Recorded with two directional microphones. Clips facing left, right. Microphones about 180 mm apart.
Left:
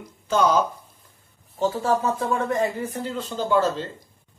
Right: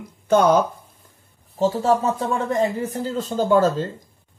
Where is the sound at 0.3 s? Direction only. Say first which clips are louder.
Right 5 dB; 55° right (ahead or behind).